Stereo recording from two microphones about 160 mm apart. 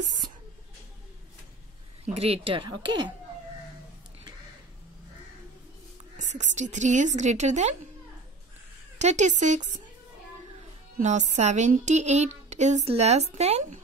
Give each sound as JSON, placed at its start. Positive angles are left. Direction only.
{"t": 2.1, "sound": "speech", "side_deg": -40}
{"t": 6.1, "sound": "speech", "side_deg": -50}
{"t": 8.9, "sound": "speech", "side_deg": -45}
{"t": 11.0, "sound": "speech", "side_deg": -50}